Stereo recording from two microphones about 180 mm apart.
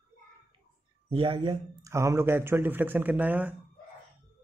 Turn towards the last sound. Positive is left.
turn(degrees=-10)  # may be behind; listen again after turning